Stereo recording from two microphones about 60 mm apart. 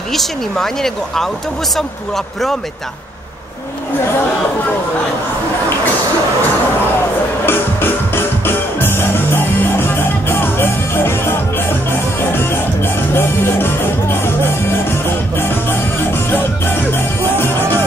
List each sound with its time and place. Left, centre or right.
0.1 s speech: centre
7.4 s music: left